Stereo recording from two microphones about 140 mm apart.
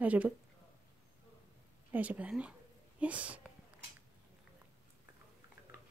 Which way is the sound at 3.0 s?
10° right (ahead or behind).